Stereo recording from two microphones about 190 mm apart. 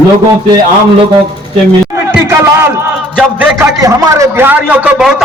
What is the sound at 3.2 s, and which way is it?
A man's voice, 15° right (ahead or behind).